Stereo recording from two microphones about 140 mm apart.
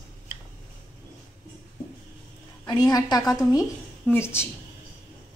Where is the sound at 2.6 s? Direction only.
30° left (ahead or behind).